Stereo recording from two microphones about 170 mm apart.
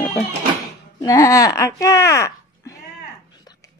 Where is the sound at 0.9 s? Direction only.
20° left (ahead or behind).